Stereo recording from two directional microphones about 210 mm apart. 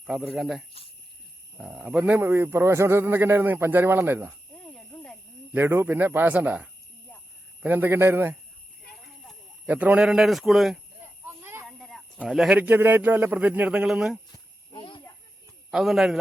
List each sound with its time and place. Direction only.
0.0 s a man's voice: centre (ahead or behind)
4.5 s snake: 5° left (ahead or behind)
5.5 s a man's voice: 10° right (ahead or behind)
8.9 s a sound: 5° right (ahead or behind)
11.3 s speech: 10° right (ahead or behind)
14.7 s snake: 20° left (ahead or behind)
15.7 s speech: centre (ahead or behind)